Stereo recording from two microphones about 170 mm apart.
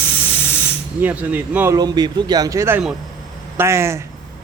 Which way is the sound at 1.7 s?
25° right (ahead or behind).